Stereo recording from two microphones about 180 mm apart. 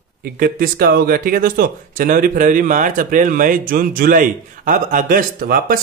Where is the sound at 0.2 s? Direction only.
55° right (ahead or behind).